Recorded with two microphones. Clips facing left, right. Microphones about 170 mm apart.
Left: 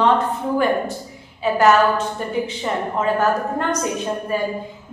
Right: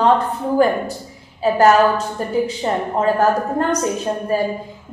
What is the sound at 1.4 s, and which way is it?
Speech, 35° right (ahead or behind).